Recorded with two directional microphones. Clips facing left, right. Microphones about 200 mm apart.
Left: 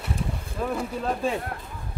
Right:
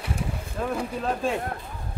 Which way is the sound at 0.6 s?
Centre (ahead or behind).